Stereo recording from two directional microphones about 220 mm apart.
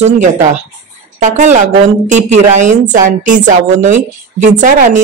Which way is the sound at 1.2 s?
35° right (ahead or behind).